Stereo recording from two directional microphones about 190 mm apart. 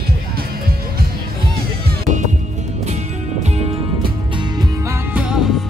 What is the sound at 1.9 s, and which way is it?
Music, 40° right (ahead or behind).